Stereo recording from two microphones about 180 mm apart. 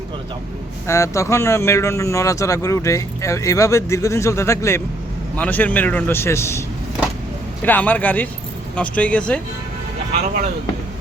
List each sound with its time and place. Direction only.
0.9 s speech: 15° left (ahead or behind)
7.6 s speech: 10° left (ahead or behind)